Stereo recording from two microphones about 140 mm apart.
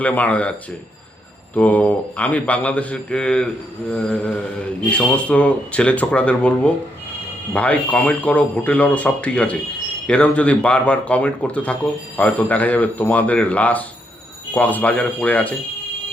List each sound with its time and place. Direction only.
0.0 s speech: 10° left (ahead or behind)
1.5 s speech: 10° left (ahead or behind)